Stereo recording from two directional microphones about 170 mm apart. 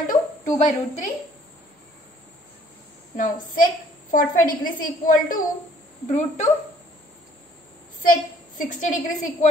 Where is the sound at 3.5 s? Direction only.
55° left (ahead or behind).